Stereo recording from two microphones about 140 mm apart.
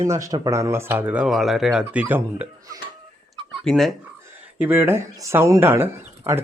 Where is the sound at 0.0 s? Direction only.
25° right (ahead or behind).